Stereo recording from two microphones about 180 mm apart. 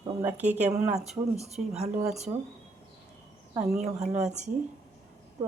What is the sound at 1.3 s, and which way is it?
Speech, 35° right (ahead or behind).